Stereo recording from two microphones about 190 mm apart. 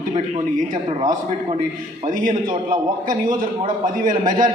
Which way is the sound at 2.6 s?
45° right (ahead or behind).